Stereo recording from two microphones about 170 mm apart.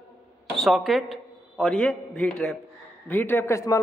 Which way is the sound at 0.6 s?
Centre (ahead or behind).